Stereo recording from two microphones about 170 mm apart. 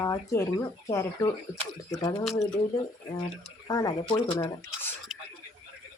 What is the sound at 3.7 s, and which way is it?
Speech, 25° left (ahead or behind).